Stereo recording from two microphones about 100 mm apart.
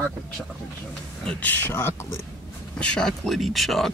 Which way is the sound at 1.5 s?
20° left (ahead or behind).